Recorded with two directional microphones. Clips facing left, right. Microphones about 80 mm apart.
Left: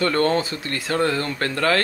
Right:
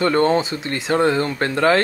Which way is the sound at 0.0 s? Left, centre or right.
Centre.